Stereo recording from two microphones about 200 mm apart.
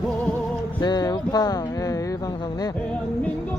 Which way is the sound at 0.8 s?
20° left (ahead or behind).